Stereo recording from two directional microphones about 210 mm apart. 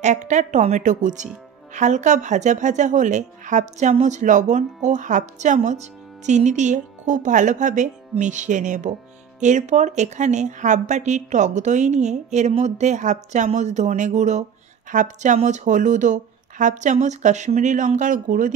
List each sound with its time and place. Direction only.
0.0 s a woman's voice: 35° right (ahead or behind)